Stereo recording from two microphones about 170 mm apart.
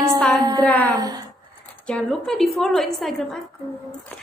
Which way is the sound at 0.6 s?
10° left (ahead or behind).